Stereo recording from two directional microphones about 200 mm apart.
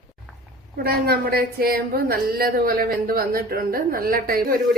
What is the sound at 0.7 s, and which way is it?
A woman's voice, 50° right (ahead or behind).